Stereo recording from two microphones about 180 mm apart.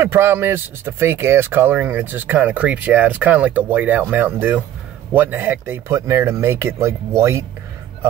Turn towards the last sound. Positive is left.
turn(degrees=-15)  # may be behind; listen again after turning